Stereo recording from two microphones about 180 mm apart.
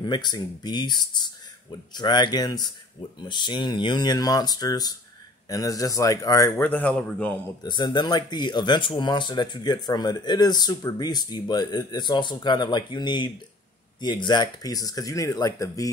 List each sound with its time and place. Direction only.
0.0 s a man's voice: 25° left (ahead or behind); by 7.3 s 5° left (ahead or behind)
7.6 s speech: 25° left (ahead or behind)